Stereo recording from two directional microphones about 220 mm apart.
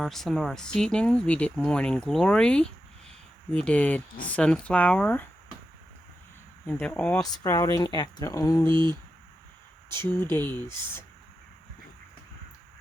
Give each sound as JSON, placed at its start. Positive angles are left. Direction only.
{"t": 0.0, "sound": "speech", "side_deg": 0}
{"t": 6.7, "sound": "speech", "side_deg": 5}
{"t": 8.7, "sound": "static", "side_deg": -20}
{"t": 10.0, "sound": "speech", "side_deg": 10}